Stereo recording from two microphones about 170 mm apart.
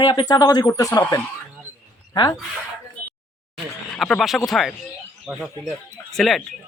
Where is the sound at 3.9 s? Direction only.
Centre (ahead or behind).